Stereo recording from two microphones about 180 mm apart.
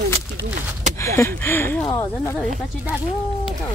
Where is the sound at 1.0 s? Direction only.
15° left (ahead or behind).